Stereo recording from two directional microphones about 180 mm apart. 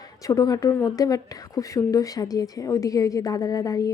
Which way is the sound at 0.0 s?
20° left (ahead or behind).